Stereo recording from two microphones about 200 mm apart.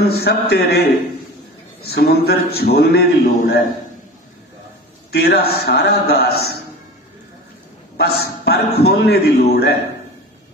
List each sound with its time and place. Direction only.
0.0 s a man's voice: 50° left (ahead or behind)
1.8 s a man's voice: 50° left (ahead or behind)
5.1 s a man's voice: 50° left (ahead or behind)
8.0 s a man's voice: 50° left (ahead or behind)